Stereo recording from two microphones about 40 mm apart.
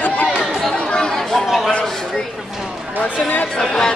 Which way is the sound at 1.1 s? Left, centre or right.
Centre.